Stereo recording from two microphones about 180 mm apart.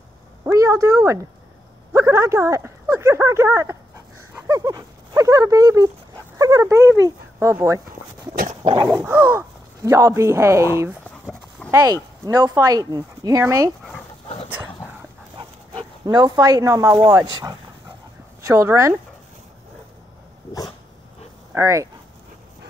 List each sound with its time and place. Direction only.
0.4 s a sound: 20° right (ahead or behind)
2.0 s speech: 15° right (ahead or behind)
14.2 s dog: 35° left (ahead or behind)
15.3 s speech: 30° right (ahead or behind)
21.5 s speech: 15° right (ahead or behind)